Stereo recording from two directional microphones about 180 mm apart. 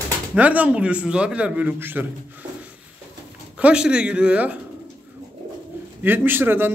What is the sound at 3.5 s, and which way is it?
Speech, 5° right (ahead or behind).